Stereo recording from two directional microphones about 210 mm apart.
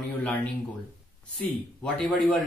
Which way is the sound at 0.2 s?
5° left (ahead or behind).